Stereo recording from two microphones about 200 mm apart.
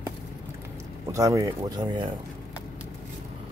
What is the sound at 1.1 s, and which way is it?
Speech, 15° right (ahead or behind).